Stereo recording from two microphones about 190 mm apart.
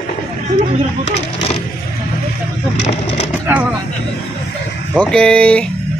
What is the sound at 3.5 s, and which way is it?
Speech, 10° right (ahead or behind).